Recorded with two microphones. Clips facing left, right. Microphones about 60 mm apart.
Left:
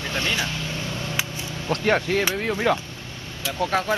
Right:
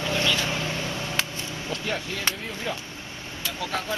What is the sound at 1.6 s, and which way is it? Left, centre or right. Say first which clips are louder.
Speech: left 10 dB; left.